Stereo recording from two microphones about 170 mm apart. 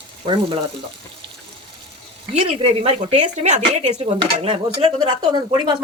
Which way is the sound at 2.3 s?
35° right (ahead or behind).